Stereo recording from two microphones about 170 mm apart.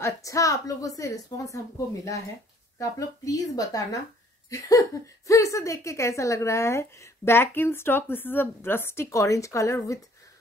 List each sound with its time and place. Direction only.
0.0 s a woman's voice: 20° left (ahead or behind)
2.8 s a woman's voice: 20° left (ahead or behind)